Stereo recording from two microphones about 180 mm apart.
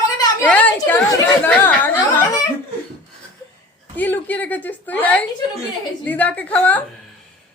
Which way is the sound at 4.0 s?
10° left (ahead or behind).